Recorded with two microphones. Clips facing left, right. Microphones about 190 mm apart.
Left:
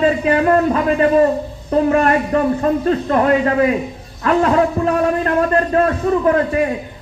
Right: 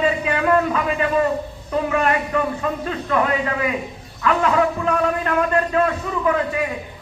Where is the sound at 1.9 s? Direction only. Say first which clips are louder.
Left 4 dB; 40° left (ahead or behind).